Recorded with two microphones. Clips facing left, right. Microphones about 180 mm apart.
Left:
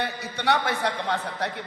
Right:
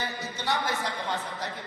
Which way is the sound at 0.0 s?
65° left (ahead or behind).